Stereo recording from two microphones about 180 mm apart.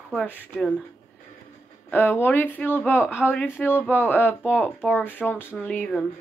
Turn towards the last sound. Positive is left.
turn(degrees=10)  # may be behind; listen again after turning